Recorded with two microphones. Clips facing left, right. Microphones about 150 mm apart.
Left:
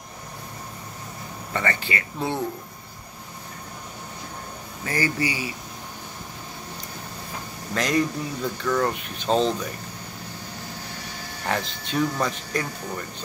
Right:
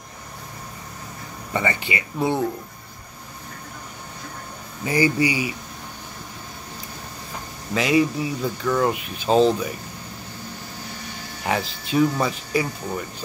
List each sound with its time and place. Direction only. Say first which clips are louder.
1.5 s speech: right 2 dB; 15° right (ahead or behind)
4.8 s speech: right 6 dB; 15° right (ahead or behind)
7.7 s speech: right 4 dB; 5° right (ahead or behind)
11.4 s speech: right 3 dB; 5° right (ahead or behind)